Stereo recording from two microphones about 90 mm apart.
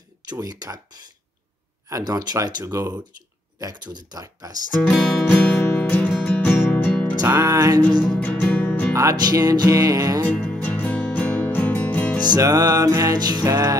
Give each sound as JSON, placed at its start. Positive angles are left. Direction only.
{"t": 0.3, "sound": "speech", "side_deg": -45}
{"t": 2.6, "sound": "music", "side_deg": -40}
{"t": 3.5, "sound": "speech", "side_deg": -50}
{"t": 4.8, "sound": "music", "side_deg": 5}
{"t": 7.2, "sound": "music", "side_deg": -35}
{"t": 8.1, "sound": "music", "side_deg": 15}
{"t": 8.9, "sound": "speech", "side_deg": -40}
{"t": 10.6, "sound": "music", "side_deg": 15}
{"t": 12.3, "sound": "music", "side_deg": -45}